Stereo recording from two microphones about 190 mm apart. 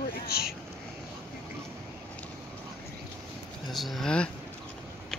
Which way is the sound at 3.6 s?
Centre (ahead or behind).